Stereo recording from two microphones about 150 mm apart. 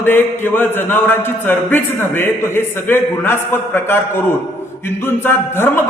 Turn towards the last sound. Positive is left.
turn(degrees=15)  # may be behind; listen again after turning